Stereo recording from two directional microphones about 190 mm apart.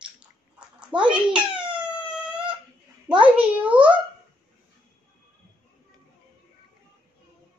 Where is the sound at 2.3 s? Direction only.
5° right (ahead or behind).